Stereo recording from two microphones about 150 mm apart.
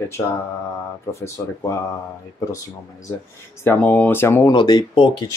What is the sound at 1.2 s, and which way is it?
Speech, 20° left (ahead or behind).